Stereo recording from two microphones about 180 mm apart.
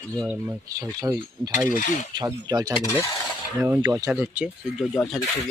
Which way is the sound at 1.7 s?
45° left (ahead or behind).